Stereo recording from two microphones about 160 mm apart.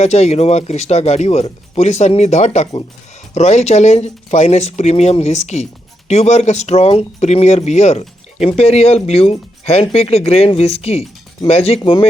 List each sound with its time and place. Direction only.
0.0 s speech: 45° left (ahead or behind)